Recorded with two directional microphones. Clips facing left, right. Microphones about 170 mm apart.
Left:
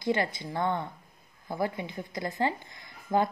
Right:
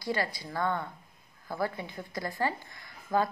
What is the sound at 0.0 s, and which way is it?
A woman's voice, 20° left (ahead or behind).